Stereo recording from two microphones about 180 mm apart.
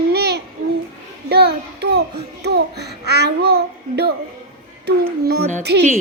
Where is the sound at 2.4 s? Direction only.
65° right (ahead or behind).